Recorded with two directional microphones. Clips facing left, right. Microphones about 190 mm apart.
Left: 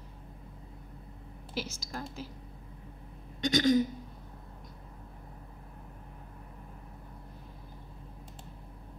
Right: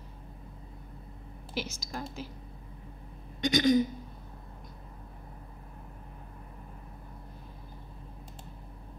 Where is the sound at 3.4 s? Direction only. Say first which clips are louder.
Right 1 dB; 15° right (ahead or behind).